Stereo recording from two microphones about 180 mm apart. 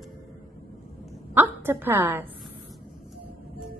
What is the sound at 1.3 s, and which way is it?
A woman's voice, 10° right (ahead or behind).